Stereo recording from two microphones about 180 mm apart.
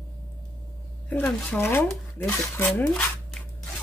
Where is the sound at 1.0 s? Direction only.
10° left (ahead or behind).